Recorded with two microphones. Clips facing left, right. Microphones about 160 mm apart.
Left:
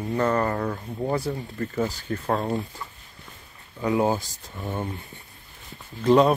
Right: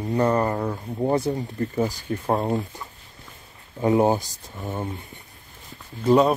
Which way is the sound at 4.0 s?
20° right (ahead or behind).